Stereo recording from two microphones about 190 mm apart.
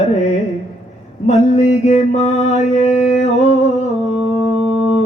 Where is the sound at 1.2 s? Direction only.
35° left (ahead or behind).